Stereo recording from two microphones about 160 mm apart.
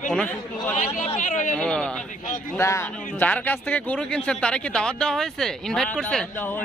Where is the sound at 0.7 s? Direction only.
45° left (ahead or behind).